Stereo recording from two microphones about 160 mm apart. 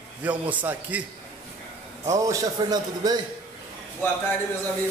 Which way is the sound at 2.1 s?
20° right (ahead or behind).